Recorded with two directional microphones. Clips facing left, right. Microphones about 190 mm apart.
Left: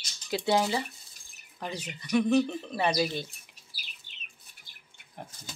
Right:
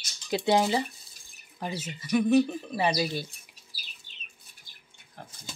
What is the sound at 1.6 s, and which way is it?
Speech, 5° right (ahead or behind).